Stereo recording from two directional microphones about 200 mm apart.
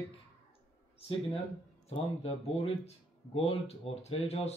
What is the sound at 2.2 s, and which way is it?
Speech, 30° left (ahead or behind).